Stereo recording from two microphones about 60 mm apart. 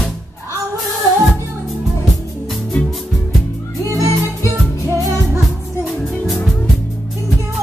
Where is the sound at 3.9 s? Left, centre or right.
Right.